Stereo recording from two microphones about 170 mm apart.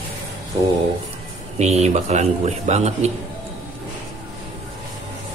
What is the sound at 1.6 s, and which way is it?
Speech, 40° right (ahead or behind).